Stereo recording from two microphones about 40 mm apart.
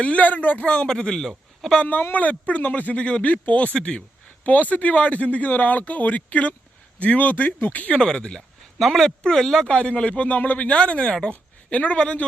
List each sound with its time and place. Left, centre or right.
0.0 s speech: left
0.6 s speech: left
2.1 s speech: left
7.9 s speech: centre
8.8 s speech: centre
9.0 s speech: centre
9.6 s speech: left
10.7 s speech: left
11.3 s speech: left